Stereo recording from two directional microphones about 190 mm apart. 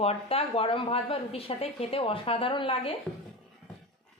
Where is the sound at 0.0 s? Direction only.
30° left (ahead or behind).